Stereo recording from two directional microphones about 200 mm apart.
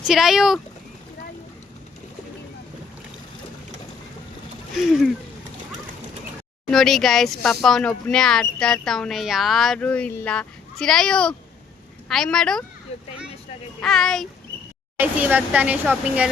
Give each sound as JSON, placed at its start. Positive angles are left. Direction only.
{"t": 0.1, "sound": "speech", "side_deg": 0}
{"t": 6.7, "sound": "speech", "side_deg": 0}
{"t": 12.9, "sound": "speech", "side_deg": 30}
{"t": 13.8, "sound": "speech", "side_deg": 0}
{"t": 14.9, "sound": "speech", "side_deg": -10}